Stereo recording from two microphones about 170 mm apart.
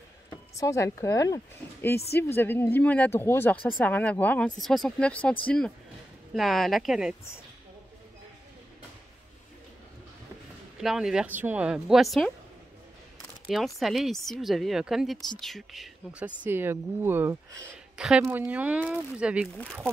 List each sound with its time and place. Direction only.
0.3 s speech: 20° left (ahead or behind); by 7.2 s 5° right (ahead or behind)
10.8 s speech: centre (ahead or behind)
13.5 s speech: centre (ahead or behind)
19.5 s speech: 5° left (ahead or behind)